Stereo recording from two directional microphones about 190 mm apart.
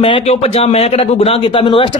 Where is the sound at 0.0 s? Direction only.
30° left (ahead or behind).